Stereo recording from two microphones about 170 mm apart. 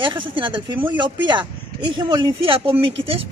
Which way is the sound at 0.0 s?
30° right (ahead or behind).